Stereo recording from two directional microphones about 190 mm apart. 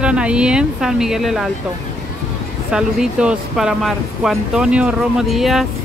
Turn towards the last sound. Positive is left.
turn(degrees=0)  # may be behind; listen again after turning